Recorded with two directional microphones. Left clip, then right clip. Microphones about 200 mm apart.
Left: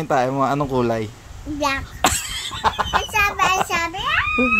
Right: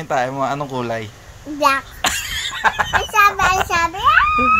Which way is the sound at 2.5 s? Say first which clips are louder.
Right 3 dB; centre (ahead or behind).